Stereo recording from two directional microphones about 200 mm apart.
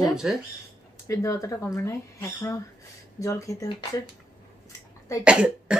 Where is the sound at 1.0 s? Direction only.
15° left (ahead or behind).